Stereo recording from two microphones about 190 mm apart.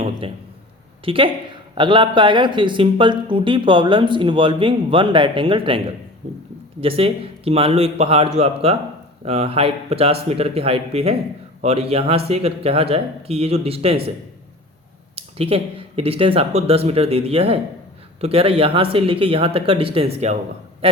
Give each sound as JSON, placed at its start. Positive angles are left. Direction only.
{"t": 0.2, "sound": "a sound", "side_deg": -30}
{"t": 1.0, "sound": "speech", "side_deg": -25}
{"t": 6.8, "sound": "speech", "side_deg": -30}
{"t": 15.1, "sound": "speech", "side_deg": -30}